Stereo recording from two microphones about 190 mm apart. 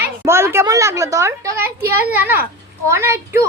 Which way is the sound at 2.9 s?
15° right (ahead or behind).